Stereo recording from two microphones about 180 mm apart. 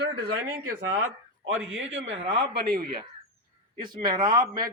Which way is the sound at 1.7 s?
90° right.